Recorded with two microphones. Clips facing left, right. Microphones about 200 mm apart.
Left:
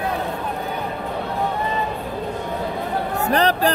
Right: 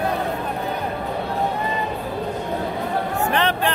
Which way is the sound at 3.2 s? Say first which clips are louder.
Left 5 dB; 40° left (ahead or behind).